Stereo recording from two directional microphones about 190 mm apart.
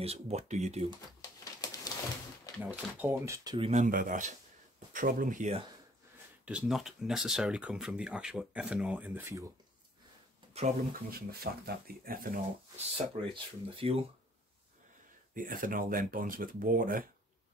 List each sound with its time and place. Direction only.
0.0 s speech: 35° right (ahead or behind)
1.4 s a sound: 20° left (ahead or behind)
2.6 s speech: 10° right (ahead or behind)
3.4 s speech: 25° right (ahead or behind)
3.7 s speech: 45° right (ahead or behind)
6.4 s speech: 5° right (ahead or behind)
10.8 s speech: 50° right (ahead or behind)
12.7 s speech: 30° right (ahead or behind)
15.3 s speech: 45° right (ahead or behind)